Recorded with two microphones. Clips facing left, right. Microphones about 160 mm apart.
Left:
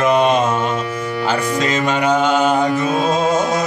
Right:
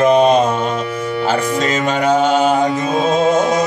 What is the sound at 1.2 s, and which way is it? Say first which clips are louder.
Music: right 1 dB; 40° right (ahead or behind).